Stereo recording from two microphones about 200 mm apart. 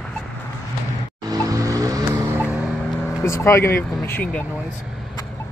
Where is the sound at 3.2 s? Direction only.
15° left (ahead or behind).